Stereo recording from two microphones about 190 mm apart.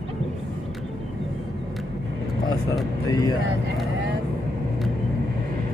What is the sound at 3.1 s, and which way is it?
Speech, 20° left (ahead or behind).